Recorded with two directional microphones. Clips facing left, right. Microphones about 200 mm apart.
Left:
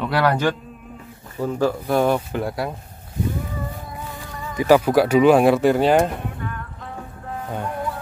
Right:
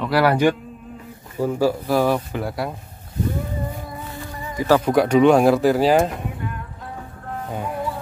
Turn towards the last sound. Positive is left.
turn(degrees=-5)  # may be behind; listen again after turning